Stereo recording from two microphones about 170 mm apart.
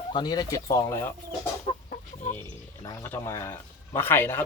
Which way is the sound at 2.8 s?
15° left (ahead or behind).